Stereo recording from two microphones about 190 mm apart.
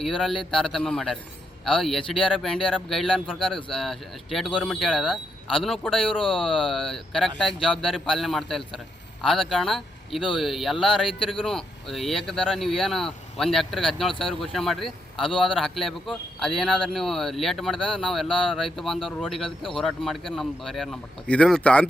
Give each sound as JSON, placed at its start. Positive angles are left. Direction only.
{"t": 0.0, "sound": "a man's voice", "side_deg": 0}
{"t": 11.0, "sound": "a man's voice", "side_deg": 25}
{"t": 11.4, "sound": "a man's voice", "side_deg": 0}